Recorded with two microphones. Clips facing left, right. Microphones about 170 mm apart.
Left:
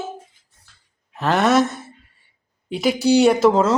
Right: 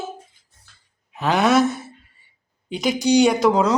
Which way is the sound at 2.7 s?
5° left (ahead or behind).